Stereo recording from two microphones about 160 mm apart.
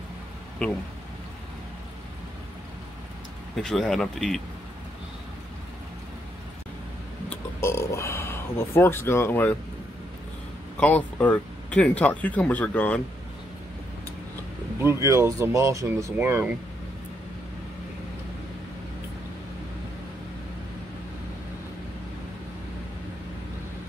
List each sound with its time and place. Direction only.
0.6 s speech: 5° left (ahead or behind)
3.5 s speech: centre (ahead or behind)
7.2 s speech: 15° left (ahead or behind)
10.8 s speech: 10° left (ahead or behind)
14.8 s speech: 15° right (ahead or behind)